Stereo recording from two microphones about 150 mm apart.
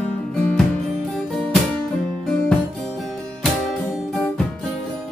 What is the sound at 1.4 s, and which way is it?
Music, 10° left (ahead or behind).